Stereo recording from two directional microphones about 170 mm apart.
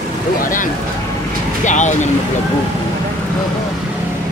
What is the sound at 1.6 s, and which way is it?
Speech, 45° left (ahead or behind).